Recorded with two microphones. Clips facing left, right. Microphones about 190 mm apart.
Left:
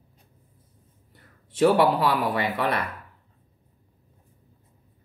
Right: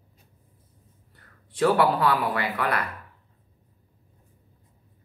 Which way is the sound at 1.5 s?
20° left (ahead or behind).